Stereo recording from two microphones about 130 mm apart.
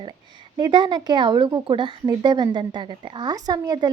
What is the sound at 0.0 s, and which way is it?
A woman's voice, 35° right (ahead or behind).